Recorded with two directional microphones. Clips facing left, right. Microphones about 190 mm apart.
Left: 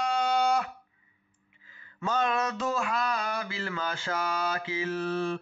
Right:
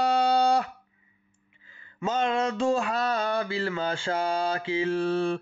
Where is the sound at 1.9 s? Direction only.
25° right (ahead or behind).